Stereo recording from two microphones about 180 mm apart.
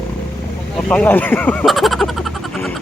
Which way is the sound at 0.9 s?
10° left (ahead or behind).